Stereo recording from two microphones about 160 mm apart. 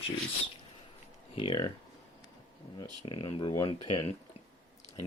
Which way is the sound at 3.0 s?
30° left (ahead or behind).